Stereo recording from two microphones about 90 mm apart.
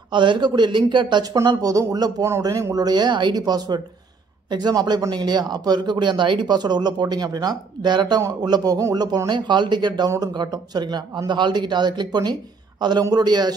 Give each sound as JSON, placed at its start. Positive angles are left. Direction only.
{"t": 0.1, "sound": "speech", "side_deg": -60}
{"t": 1.3, "sound": "speech", "side_deg": -45}